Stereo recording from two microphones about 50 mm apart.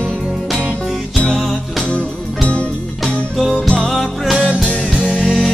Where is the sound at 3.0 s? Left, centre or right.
Centre.